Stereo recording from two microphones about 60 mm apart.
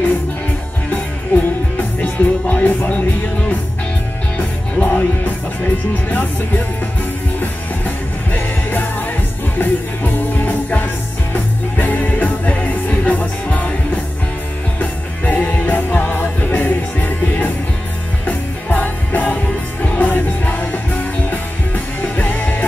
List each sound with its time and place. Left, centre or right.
1.3 s music: left
4.4 s music: left
14.8 s music: left